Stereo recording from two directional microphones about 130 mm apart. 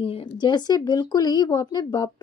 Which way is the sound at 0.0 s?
40° left (ahead or behind).